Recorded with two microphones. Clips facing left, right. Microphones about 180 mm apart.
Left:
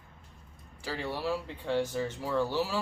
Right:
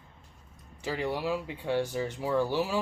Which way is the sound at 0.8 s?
15° right (ahead or behind).